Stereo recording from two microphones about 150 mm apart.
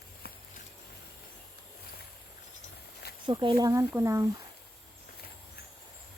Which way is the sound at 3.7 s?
20° right (ahead or behind).